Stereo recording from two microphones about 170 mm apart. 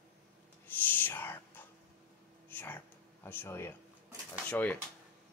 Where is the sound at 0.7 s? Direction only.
10° left (ahead or behind).